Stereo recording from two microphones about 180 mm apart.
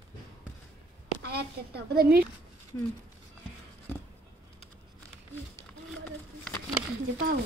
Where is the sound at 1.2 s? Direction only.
65° right (ahead or behind).